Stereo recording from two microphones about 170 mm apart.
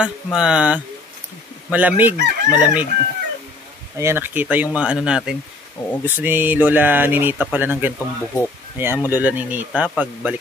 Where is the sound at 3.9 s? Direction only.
15° right (ahead or behind).